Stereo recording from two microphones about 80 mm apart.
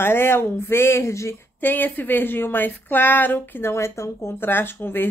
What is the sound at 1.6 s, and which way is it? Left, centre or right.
A woman's voice, left.